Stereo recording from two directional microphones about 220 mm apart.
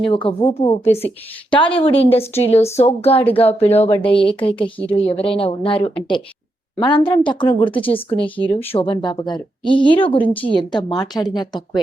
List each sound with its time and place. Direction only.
0.0 s speech: 25° left (ahead or behind)